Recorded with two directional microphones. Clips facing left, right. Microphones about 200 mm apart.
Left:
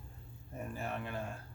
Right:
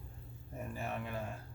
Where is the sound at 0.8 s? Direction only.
Centre (ahead or behind).